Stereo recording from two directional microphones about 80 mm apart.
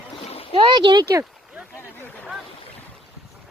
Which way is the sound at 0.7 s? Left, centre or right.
Right.